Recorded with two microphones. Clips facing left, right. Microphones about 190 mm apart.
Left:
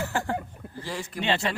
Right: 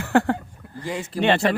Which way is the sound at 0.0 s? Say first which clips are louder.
Right 9 dB; 60° right (ahead or behind).